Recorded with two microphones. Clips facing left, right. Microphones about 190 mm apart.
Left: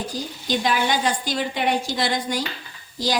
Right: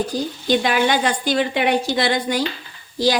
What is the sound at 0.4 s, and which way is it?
A woman's voice, 65° right (ahead or behind).